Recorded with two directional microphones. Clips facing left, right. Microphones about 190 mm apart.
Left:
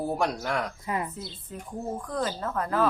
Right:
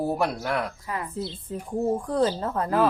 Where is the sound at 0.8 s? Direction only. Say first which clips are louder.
Left 2 dB; 20° left (ahead or behind).